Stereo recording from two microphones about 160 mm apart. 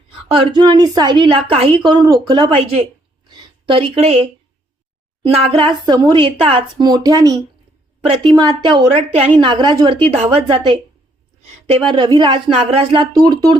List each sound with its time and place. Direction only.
0.3 s a woman's voice: 30° right (ahead or behind)
3.2 s a sound: 25° right (ahead or behind)
5.2 s a woman's voice: 35° right (ahead or behind)
11.9 s a woman's voice: 25° right (ahead or behind)